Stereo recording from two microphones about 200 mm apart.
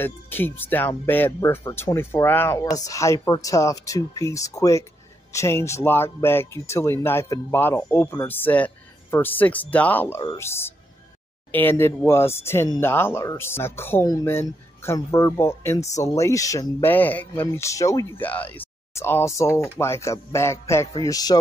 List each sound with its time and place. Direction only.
0.0 s a man's voice: 10° left (ahead or behind)